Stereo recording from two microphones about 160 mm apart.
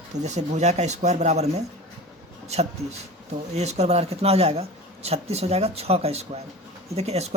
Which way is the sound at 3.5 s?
45° right (ahead or behind).